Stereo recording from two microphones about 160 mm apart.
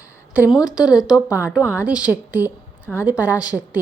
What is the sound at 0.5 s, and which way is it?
Speech, 5° right (ahead or behind).